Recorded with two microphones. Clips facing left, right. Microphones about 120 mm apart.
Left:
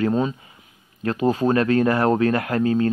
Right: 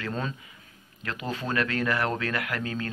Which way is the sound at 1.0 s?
35° left (ahead or behind).